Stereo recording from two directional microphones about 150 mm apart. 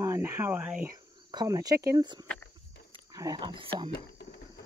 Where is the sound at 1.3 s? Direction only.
25° right (ahead or behind).